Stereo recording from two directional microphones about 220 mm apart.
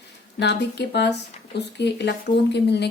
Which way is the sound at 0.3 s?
50° left (ahead or behind).